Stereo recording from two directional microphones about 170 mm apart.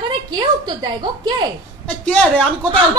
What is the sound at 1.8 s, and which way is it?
Speech, 5° left (ahead or behind).